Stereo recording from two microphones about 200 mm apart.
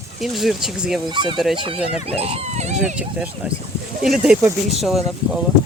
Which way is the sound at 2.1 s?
30° right (ahead or behind).